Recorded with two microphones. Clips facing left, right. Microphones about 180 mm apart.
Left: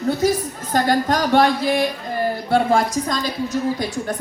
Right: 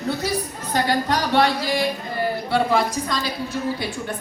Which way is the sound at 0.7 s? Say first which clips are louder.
Left 3 dB; 45° left (ahead or behind).